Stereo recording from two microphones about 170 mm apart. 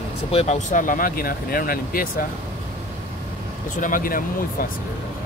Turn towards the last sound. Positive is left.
turn(degrees=55)  # may be behind; listen again after turning